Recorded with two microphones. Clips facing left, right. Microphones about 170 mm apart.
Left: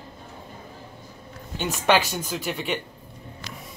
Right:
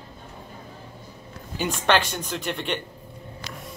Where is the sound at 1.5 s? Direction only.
5° left (ahead or behind).